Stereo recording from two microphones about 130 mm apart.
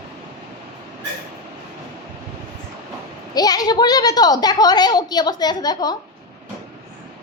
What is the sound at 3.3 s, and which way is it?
A woman's voice, 30° left (ahead or behind).